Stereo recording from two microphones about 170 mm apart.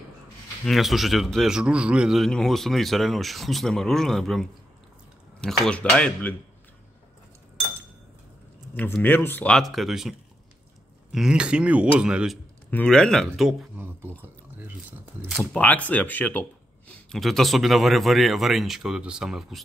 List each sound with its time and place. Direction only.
0.7 s speech: centre (ahead or behind)
8.7 s speech: 10° left (ahead or behind); by 12.4 s 5° right (ahead or behind)
12.7 s speech: 5° left (ahead or behind)
14.9 s speech: centre (ahead or behind)